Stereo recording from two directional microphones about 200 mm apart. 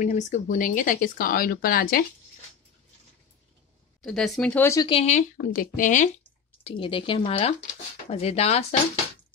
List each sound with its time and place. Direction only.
0.0 s speech: 35° left (ahead or behind)
4.0 s speech: 5° left (ahead or behind)
4.8 s speech: 30° left (ahead or behind)
6.6 s speech: 25° left (ahead or behind)